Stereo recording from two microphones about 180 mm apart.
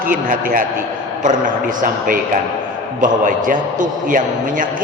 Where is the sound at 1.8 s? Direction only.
50° right (ahead or behind).